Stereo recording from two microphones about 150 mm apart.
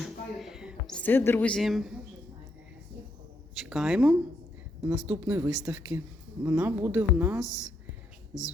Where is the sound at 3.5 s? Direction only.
Centre (ahead or behind).